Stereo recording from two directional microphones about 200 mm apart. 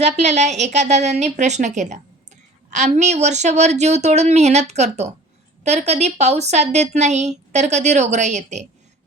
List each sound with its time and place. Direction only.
0.0 s a woman's voice: 35° right (ahead or behind)